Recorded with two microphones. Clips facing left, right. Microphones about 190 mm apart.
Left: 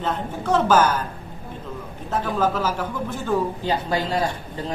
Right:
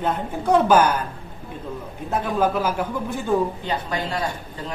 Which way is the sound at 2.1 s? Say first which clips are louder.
Right 1 dB; 15° right (ahead or behind).